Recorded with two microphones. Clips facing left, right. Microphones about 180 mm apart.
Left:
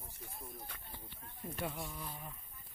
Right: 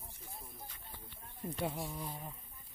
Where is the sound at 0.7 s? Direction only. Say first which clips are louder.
Left 5 dB; 65° left (ahead or behind).